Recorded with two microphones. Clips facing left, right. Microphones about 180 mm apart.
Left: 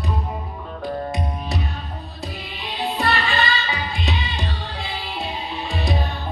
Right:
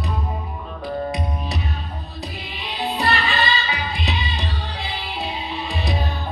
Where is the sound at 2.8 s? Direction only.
Centre (ahead or behind).